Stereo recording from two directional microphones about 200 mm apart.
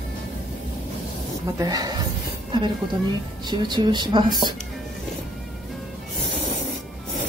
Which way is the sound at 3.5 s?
20° right (ahead or behind).